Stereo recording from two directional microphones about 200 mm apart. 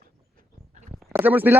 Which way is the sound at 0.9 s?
5° right (ahead or behind).